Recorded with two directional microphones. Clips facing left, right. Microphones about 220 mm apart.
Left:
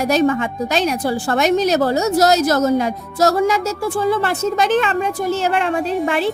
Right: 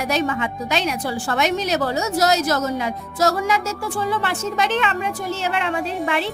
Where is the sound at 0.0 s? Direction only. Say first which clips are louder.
Left 6 dB; 45° left (ahead or behind).